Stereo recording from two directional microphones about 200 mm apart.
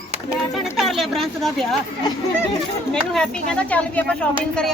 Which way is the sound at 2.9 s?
5° left (ahead or behind).